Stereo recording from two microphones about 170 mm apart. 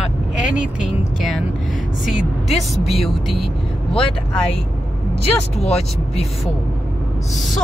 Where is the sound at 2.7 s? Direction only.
Centre (ahead or behind).